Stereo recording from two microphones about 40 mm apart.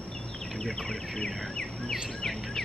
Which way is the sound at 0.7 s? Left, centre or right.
Centre.